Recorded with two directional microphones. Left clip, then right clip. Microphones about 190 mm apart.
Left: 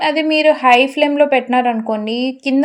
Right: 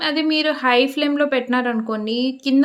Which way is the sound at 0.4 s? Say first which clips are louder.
Left 8 dB; 15° left (ahead or behind).